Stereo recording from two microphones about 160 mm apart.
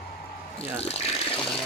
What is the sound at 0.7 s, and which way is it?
Water, 40° left (ahead or behind).